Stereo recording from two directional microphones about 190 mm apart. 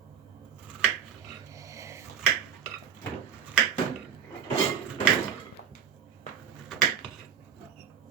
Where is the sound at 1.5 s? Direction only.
15° right (ahead or behind).